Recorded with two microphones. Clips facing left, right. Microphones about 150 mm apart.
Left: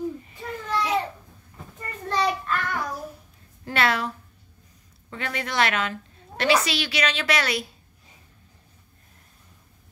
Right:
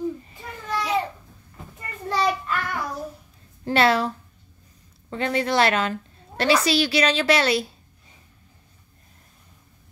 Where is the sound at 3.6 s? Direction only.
30° right (ahead or behind).